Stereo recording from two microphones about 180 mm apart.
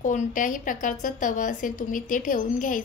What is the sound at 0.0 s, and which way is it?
A woman's voice, 45° left (ahead or behind).